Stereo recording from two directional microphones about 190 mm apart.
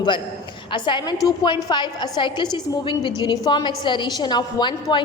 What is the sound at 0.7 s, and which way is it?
A woman's voice, 25° left (ahead or behind).